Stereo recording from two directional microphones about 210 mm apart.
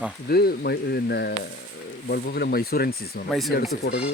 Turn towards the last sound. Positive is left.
turn(degrees=45)  # may be behind; listen again after turning